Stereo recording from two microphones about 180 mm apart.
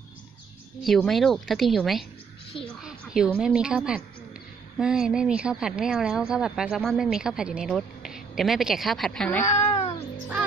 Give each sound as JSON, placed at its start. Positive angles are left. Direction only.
{"t": 0.8, "sound": "speech", "side_deg": 0}
{"t": 9.5, "sound": "cat", "side_deg": 35}